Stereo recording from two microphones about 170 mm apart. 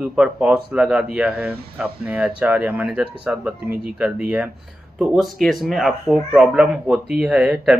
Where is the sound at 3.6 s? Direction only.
65° right (ahead or behind).